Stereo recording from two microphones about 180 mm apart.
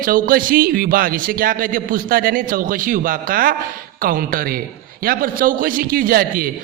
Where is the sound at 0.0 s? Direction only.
50° right (ahead or behind).